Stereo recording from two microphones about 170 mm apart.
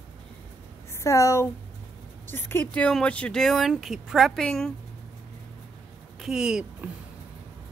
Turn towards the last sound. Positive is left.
turn(degrees=-5)  # may be behind; listen again after turning